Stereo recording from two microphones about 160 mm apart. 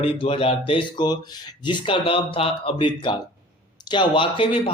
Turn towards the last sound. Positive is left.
turn(degrees=35)  # may be behind; listen again after turning